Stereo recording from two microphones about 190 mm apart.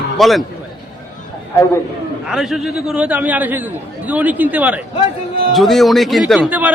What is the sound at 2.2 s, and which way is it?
A man's voice, centre (ahead or behind).